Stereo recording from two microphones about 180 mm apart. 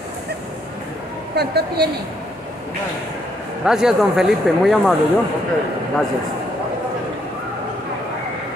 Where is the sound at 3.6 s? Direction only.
5° right (ahead or behind).